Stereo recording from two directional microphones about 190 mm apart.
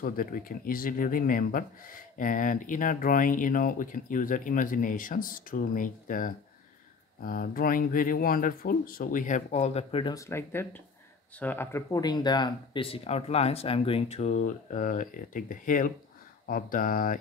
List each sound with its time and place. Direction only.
0.0 s a man's voice: 50° left (ahead or behind); by 10.1 s 30° left (ahead or behind)
10.1 s a man's voice: 15° left (ahead or behind); by 17.2 s 50° left (ahead or behind)